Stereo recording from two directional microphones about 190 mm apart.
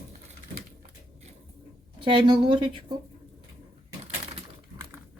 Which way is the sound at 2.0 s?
25° right (ahead or behind).